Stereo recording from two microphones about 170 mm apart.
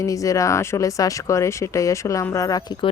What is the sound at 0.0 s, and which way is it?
Speech, 20° left (ahead or behind).